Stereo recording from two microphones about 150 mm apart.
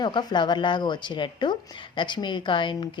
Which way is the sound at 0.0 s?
30° left (ahead or behind).